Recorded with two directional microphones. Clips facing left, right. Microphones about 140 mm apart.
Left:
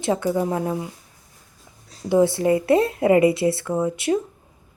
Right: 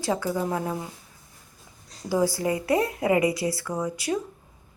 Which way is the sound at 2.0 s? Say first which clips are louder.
Left 6 dB; 25° left (ahead or behind).